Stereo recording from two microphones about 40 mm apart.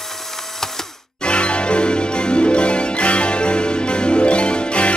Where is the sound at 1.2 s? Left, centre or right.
Left.